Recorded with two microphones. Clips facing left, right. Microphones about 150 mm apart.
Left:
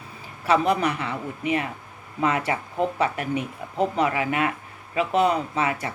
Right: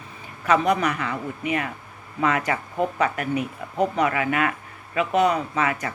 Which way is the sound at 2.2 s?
30° left (ahead or behind).